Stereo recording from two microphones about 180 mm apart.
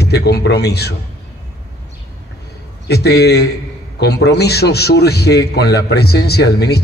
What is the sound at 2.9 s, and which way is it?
A man's voice, 65° left (ahead or behind).